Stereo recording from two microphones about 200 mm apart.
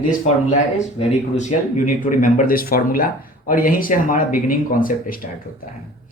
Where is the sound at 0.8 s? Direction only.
35° left (ahead or behind).